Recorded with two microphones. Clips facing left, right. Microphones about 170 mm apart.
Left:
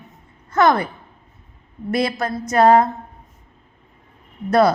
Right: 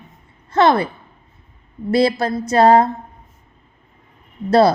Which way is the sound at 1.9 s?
30° right (ahead or behind).